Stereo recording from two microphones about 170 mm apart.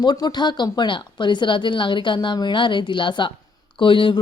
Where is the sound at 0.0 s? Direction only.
25° left (ahead or behind).